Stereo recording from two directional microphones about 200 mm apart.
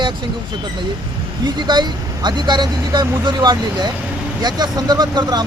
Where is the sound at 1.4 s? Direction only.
20° right (ahead or behind).